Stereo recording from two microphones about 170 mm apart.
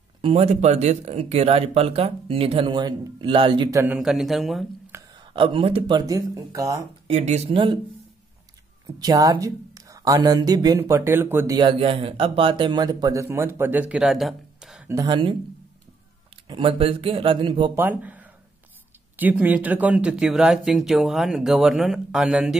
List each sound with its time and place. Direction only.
0.2 s speech: 35° right (ahead or behind)
3.8 s speech: 5° right (ahead or behind)
4.9 s speech: 25° right (ahead or behind)
7.1 s speech: 40° right (ahead or behind)
8.8 s speech: 20° right (ahead or behind)
11.5 s speech: 30° right (ahead or behind); by 14.9 s 5° right (ahead or behind)
14.9 s speech: 25° right (ahead or behind)
16.4 s speech: 30° right (ahead or behind)
17.7 s speech: 10° right (ahead or behind)